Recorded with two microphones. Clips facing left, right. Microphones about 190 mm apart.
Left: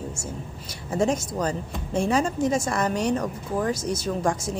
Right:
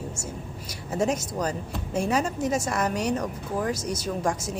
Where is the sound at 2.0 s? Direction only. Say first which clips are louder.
Left 3 dB; 5° right (ahead or behind).